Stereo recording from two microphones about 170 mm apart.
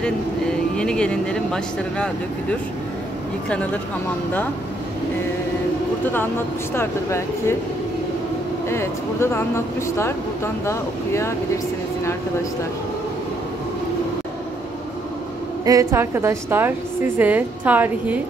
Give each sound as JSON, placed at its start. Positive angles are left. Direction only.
{"t": 0.0, "sound": "speech", "side_deg": 5}
{"t": 6.7, "sound": "speech", "side_deg": 15}
{"t": 8.6, "sound": "speech", "side_deg": 15}
{"t": 15.6, "sound": "a woman's voice", "side_deg": -20}